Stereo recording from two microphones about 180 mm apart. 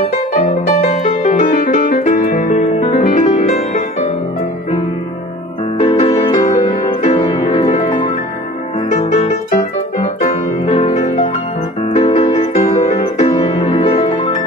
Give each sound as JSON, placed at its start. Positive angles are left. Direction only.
{"t": 1.0, "sound": "music", "side_deg": 45}
{"t": 5.8, "sound": "music", "side_deg": 30}
{"t": 9.1, "sound": "music", "side_deg": 35}
{"t": 9.5, "sound": "piano", "side_deg": 45}
{"t": 11.9, "sound": "music", "side_deg": 35}